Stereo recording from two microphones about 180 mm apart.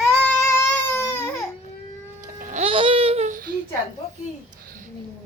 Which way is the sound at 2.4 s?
50° right (ahead or behind).